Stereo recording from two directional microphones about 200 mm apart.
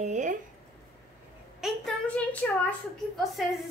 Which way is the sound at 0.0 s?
35° right (ahead or behind).